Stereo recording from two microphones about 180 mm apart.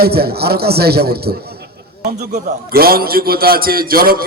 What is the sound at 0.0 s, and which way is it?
A man's voice, 60° right (ahead or behind).